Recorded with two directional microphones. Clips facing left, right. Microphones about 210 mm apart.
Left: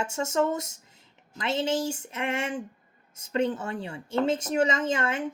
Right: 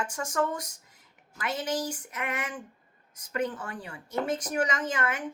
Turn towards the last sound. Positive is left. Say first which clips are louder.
# left 4 dB
turn(degrees=25)  # may be behind; listen again after turning